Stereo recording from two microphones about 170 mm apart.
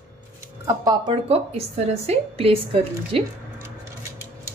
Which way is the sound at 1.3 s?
40° right (ahead or behind).